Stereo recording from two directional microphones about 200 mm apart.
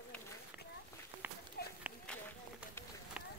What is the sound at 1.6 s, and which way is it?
Run, 50° left (ahead or behind).